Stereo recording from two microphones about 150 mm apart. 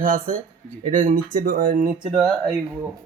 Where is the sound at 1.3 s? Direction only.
75° right (ahead or behind).